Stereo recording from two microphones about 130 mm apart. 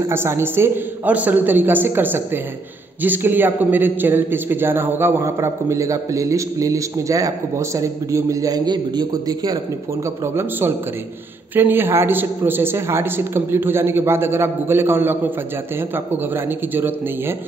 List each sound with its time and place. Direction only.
0.0 s a man's voice: 20° right (ahead or behind)